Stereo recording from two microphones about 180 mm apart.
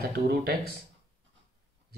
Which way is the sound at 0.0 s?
60° right (ahead or behind).